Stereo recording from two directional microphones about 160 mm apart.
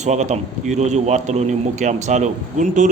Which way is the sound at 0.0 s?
45° right (ahead or behind).